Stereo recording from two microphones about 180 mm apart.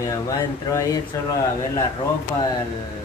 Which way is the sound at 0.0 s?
20° left (ahead or behind).